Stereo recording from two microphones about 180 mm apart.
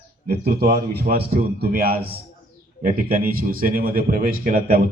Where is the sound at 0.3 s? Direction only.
60° right (ahead or behind).